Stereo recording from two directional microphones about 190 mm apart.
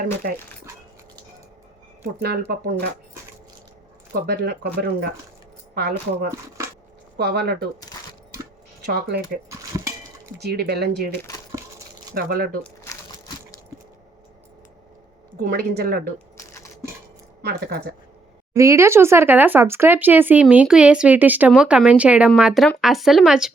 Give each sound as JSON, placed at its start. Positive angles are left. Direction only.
{"t": 0.0, "sound": "a woman's voice", "side_deg": -50}
{"t": 2.2, "sound": "speech", "side_deg": -55}
{"t": 4.1, "sound": "speech", "side_deg": -55}
{"t": 8.9, "sound": "speech", "side_deg": -55}
{"t": 9.5, "sound": "a sound", "side_deg": -15}
{"t": 10.4, "sound": "speech", "side_deg": -55}
{"t": 12.1, "sound": "a woman's voice", "side_deg": -50}
{"t": 12.6, "sound": "crumpling", "side_deg": 15}
{"t": 15.4, "sound": "a woman's voice", "side_deg": -55}
{"t": 16.1, "sound": "camera", "side_deg": 15}
{"t": 17.4, "sound": "speech", "side_deg": -55}
{"t": 18.5, "sound": "speech", "side_deg": -15}